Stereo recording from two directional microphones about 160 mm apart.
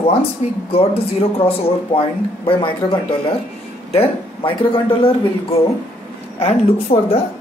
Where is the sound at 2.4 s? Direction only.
30° left (ahead or behind).